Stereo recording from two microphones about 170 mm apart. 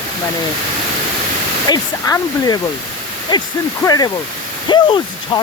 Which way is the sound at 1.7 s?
20° left (ahead or behind).